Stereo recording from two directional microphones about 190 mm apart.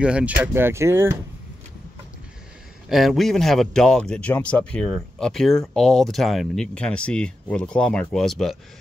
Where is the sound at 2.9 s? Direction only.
Centre (ahead or behind).